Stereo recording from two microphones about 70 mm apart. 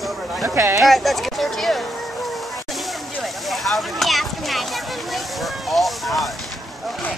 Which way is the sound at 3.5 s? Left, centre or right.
Centre.